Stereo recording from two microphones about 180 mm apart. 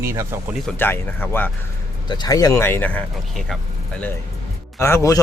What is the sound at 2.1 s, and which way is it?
A man's voice, 20° left (ahead or behind).